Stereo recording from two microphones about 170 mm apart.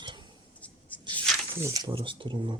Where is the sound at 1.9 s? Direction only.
30° right (ahead or behind).